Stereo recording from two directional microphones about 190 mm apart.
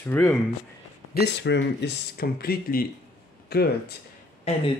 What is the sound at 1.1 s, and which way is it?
Speech, 65° left (ahead or behind).